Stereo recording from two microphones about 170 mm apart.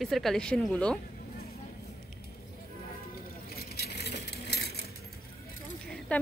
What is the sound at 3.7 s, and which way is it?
Vehicle, 75° left (ahead or behind).